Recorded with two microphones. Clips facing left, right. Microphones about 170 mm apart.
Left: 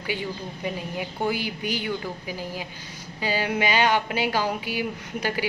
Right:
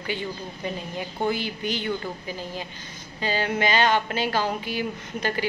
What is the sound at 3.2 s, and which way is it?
Speech, 10° left (ahead or behind).